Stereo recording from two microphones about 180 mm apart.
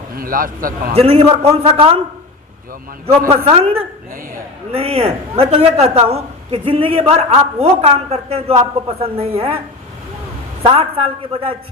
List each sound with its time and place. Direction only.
0.2 s a man's voice: 50° right (ahead or behind)
0.9 s a man's voice: 35° right (ahead or behind)
3.2 s a man's voice: 35° right (ahead or behind)
10.6 s a man's voice: 30° right (ahead or behind)